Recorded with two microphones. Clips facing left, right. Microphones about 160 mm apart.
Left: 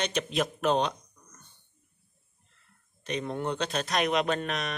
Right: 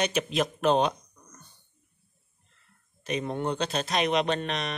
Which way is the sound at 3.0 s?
5° right (ahead or behind).